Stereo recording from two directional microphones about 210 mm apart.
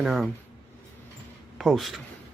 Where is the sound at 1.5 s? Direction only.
Centre (ahead or behind).